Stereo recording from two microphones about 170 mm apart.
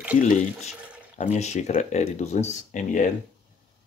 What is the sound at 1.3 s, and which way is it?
Speech, 40° left (ahead or behind).